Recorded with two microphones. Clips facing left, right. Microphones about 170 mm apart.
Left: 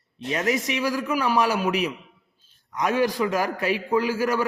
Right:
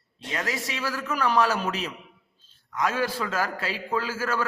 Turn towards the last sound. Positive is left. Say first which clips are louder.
# left 5 dB
turn(degrees=15)  # may be behind; listen again after turning